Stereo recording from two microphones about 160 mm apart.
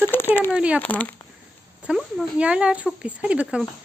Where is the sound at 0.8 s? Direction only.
10° left (ahead or behind).